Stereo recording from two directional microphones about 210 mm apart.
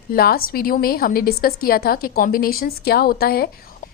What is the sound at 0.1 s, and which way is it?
A woman's voice, 45° left (ahead or behind).